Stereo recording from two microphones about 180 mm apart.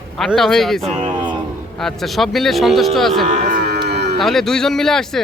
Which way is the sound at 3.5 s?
65° right (ahead or behind).